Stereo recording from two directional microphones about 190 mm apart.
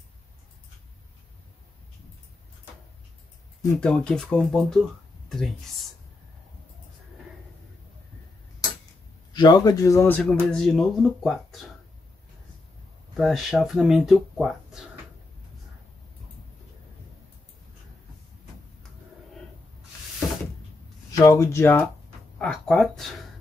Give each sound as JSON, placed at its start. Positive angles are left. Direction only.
{"t": 3.6, "sound": "speech", "side_deg": 5}
{"t": 9.3, "sound": "a man's voice", "side_deg": 20}
{"t": 13.1, "sound": "speech", "side_deg": 0}
{"t": 21.1, "sound": "a man's voice", "side_deg": 15}